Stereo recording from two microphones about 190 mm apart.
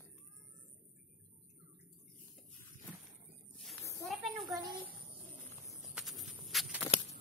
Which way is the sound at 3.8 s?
15° left (ahead or behind).